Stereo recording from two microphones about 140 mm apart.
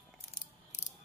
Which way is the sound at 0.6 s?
55° left (ahead or behind).